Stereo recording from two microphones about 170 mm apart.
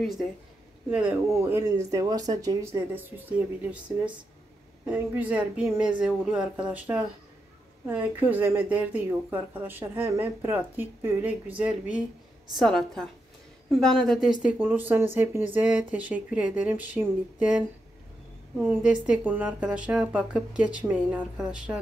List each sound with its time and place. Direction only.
0.0 s a woman's voice: centre (ahead or behind)
14.4 s speech: 10° right (ahead or behind)
18.6 s speech: 10° right (ahead or behind)